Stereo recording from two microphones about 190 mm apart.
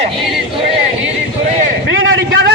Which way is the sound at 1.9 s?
90° right.